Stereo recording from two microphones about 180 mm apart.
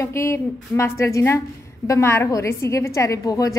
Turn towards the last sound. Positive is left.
turn(degrees=20)  # may be behind; listen again after turning